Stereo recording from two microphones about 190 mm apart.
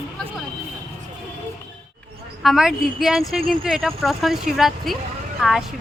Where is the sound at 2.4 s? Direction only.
Centre (ahead or behind).